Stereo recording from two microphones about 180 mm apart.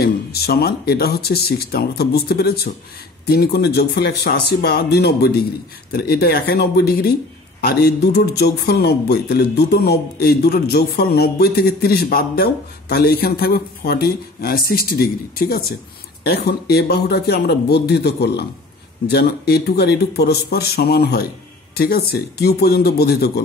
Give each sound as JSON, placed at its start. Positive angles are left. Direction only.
{"t": 0.0, "sound": "speech", "side_deg": 60}